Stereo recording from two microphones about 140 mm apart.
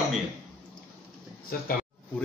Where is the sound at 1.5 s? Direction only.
90° left.